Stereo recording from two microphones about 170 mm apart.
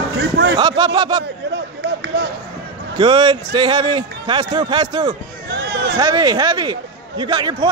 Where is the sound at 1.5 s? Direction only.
80° right.